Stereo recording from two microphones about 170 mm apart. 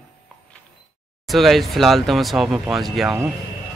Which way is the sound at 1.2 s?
Centre (ahead or behind).